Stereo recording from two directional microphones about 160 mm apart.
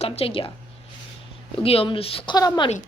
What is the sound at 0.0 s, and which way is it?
Speech, 35° left (ahead or behind).